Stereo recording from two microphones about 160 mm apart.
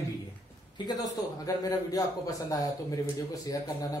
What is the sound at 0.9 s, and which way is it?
A man's voice, 25° left (ahead or behind).